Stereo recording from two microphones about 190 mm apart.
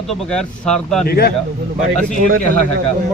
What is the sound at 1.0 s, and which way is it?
Speech, 55° left (ahead or behind).